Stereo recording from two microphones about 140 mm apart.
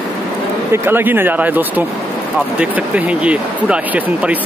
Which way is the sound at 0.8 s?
15° right (ahead or behind).